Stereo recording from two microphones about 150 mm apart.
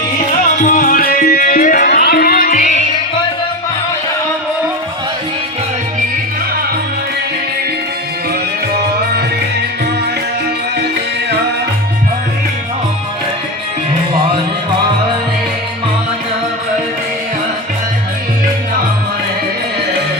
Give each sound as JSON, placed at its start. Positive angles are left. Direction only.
{"t": 0.6, "sound": "music", "side_deg": 65}